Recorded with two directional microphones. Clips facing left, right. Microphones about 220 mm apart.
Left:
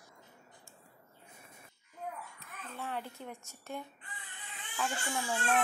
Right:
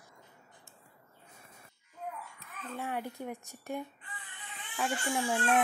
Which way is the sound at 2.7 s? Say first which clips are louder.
Right 4 dB; 15° right (ahead or behind).